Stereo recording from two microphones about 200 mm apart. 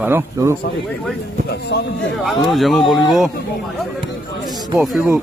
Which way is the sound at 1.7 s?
55° left (ahead or behind).